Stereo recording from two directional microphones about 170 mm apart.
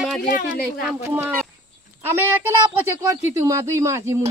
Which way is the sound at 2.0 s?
15° right (ahead or behind).